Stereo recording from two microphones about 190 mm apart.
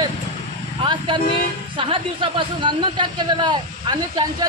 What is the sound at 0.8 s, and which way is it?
Vehicle, 25° right (ahead or behind).